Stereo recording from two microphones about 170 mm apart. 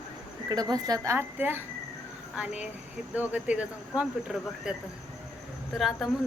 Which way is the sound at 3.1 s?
10° right (ahead or behind).